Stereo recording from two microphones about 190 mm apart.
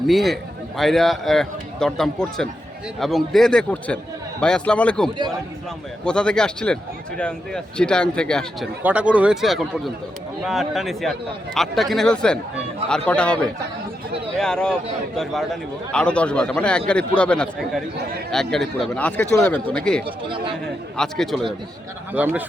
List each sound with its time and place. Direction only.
0.1 s a man's voice: centre (ahead or behind)
8.8 s a man's voice: 5° right (ahead or behind)
20.1 s speech: 25° right (ahead or behind)
20.9 s a man's voice: 5° left (ahead or behind)